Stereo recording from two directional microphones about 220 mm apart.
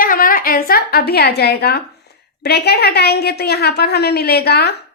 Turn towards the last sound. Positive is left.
turn(degrees=45)  # may be behind; listen again after turning